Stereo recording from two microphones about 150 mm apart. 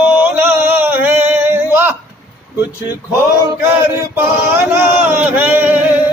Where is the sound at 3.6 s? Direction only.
15° right (ahead or behind).